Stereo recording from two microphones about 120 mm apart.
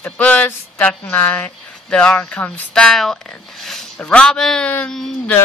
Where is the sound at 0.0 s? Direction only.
15° left (ahead or behind).